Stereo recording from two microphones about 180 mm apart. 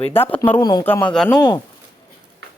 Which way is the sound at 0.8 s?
10° left (ahead or behind).